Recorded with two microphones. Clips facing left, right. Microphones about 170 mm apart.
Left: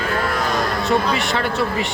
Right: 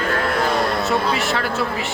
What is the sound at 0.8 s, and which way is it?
A woman's voice, centre (ahead or behind).